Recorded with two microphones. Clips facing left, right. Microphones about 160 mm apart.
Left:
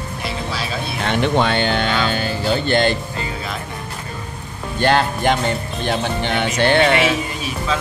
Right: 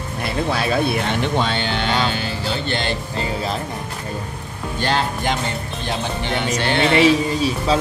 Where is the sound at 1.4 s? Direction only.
55° left (ahead or behind).